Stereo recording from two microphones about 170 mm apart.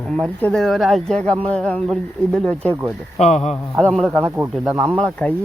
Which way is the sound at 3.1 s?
40° left (ahead or behind).